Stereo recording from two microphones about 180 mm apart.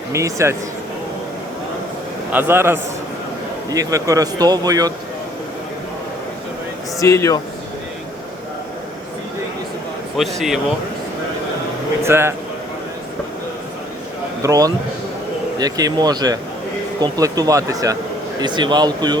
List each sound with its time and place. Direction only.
0.1 s a man's voice: 15° right (ahead or behind)
2.3 s a man's voice: 10° right (ahead or behind)
7.0 s speech: 15° left (ahead or behind)
10.2 s speech: centre (ahead or behind)
12.0 s a man's voice: 15° right (ahead or behind)
14.4 s a man's voice: 20° right (ahead or behind)